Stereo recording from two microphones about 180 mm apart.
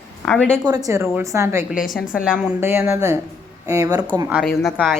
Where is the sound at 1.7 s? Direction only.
Centre (ahead or behind); by 4.1 s 20° right (ahead or behind).